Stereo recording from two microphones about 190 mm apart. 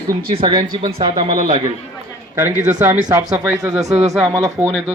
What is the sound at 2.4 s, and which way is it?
Speech, 10° right (ahead or behind).